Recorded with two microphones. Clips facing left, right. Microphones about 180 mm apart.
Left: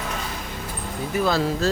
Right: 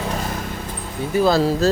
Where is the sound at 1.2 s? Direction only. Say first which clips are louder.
Right 6 dB; 35° right (ahead or behind).